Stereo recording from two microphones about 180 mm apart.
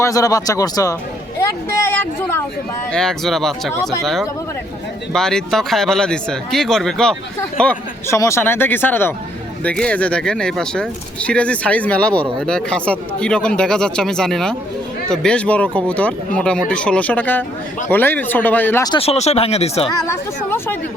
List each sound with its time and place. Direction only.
0.0 s speech: 20° left (ahead or behind)
1.7 s a sound: 10° left (ahead or behind)
2.9 s speech: 5° left (ahead or behind)
18.9 s speech: 30° left (ahead or behind)
20.1 s speech: 10° left (ahead or behind)